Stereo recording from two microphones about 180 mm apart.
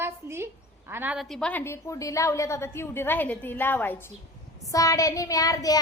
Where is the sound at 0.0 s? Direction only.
15° right (ahead or behind).